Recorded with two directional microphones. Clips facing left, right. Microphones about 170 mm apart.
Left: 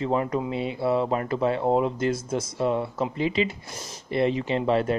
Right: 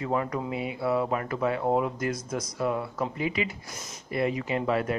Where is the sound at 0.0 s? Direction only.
25° left (ahead or behind).